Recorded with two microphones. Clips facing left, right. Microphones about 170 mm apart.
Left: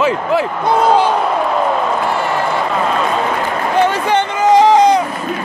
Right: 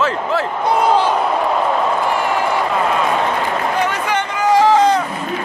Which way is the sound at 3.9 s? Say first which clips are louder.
Left 5 dB; 30° left (ahead or behind).